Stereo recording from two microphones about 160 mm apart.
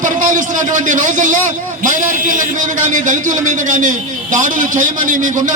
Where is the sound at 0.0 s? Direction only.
55° right (ahead or behind).